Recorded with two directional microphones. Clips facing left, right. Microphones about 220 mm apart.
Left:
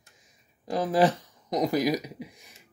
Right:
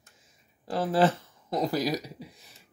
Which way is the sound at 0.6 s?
15° left (ahead or behind).